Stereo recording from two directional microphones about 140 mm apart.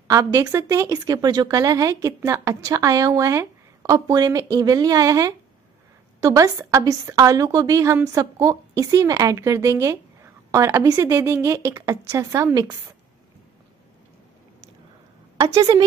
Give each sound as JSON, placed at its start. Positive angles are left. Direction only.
{"t": 0.1, "sound": "a woman's voice", "side_deg": -25}